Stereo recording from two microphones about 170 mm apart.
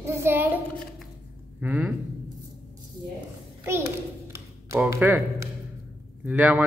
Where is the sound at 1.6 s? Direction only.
10° right (ahead or behind).